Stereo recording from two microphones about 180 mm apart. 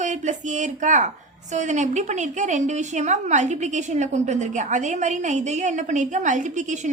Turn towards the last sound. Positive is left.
turn(degrees=-45)  # may be behind; listen again after turning